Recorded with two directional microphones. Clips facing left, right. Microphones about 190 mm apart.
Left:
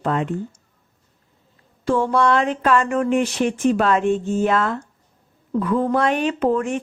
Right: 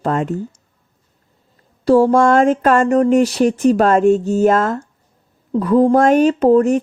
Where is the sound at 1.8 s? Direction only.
40° right (ahead or behind).